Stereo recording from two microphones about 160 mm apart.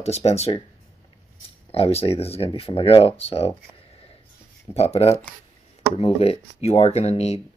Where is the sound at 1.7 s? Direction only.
40° left (ahead or behind).